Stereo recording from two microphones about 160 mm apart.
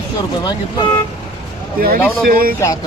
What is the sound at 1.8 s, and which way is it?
Speech, 65° right (ahead or behind).